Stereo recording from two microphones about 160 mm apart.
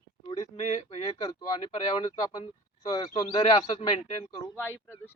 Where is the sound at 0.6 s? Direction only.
45° left (ahead or behind).